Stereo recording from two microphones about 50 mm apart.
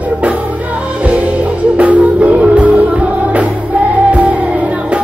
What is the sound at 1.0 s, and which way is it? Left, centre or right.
Music, right.